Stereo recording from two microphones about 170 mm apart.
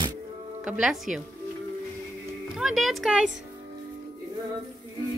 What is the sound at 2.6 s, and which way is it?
Speech, centre (ahead or behind).